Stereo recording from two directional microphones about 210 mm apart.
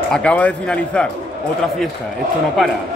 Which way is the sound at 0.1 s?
5° left (ahead or behind).